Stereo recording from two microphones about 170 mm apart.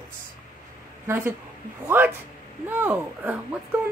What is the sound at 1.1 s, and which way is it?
Speech, 15° right (ahead or behind).